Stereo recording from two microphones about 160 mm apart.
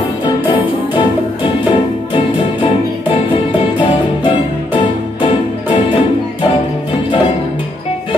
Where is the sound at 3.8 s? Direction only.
30° left (ahead or behind).